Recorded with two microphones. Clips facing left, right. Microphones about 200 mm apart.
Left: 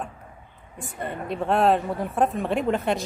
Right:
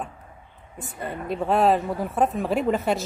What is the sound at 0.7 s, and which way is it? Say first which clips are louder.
A woman's voice: even; centre (ahead or behind).